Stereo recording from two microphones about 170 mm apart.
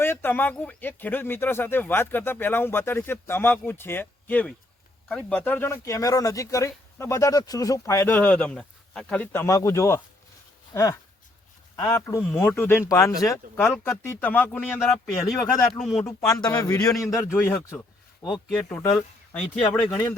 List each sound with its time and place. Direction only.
0.0 s speech: 15° left (ahead or behind)
13.7 s speech: 5° left (ahead or behind)
15.4 s a man's voice: 20° left (ahead or behind)
15.8 s speech: centre (ahead or behind)
16.0 s a man's voice: 20° left (ahead or behind)
18.3 s speech: centre (ahead or behind)